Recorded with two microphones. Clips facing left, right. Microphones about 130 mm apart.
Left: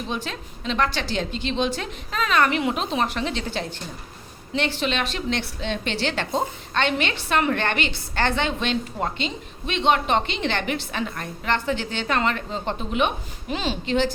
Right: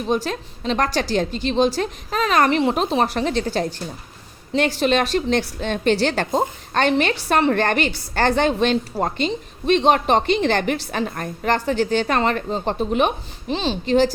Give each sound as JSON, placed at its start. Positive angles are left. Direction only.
{"t": 0.1, "sound": "a woman's voice", "side_deg": -40}